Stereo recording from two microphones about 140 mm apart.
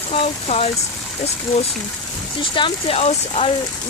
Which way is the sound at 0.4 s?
50° left (ahead or behind).